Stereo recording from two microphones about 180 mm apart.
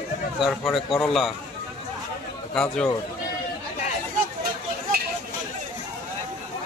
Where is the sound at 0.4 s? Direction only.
Centre (ahead or behind).